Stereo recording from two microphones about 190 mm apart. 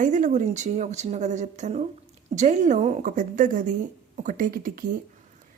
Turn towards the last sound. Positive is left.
turn(degrees=-50)  # may be behind; listen again after turning